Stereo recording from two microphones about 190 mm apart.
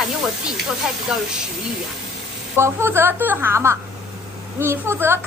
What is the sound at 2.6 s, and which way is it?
A child's voice, 15° right (ahead or behind).